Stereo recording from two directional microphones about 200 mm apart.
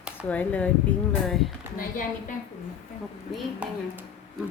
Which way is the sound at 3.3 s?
5° right (ahead or behind).